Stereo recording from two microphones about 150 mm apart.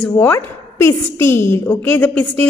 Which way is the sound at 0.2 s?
15° left (ahead or behind).